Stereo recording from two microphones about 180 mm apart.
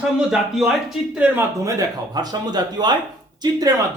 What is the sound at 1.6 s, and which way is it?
Speech, 20° right (ahead or behind).